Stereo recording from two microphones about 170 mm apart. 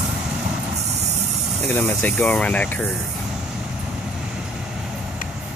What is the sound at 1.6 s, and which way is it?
Speech, 10° left (ahead or behind).